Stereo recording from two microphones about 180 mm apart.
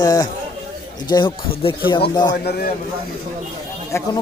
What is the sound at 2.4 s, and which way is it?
Speech, 60° left (ahead or behind).